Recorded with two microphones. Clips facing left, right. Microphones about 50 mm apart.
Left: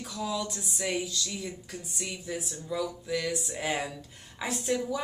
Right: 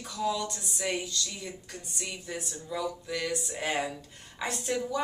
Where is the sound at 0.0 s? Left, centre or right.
Centre.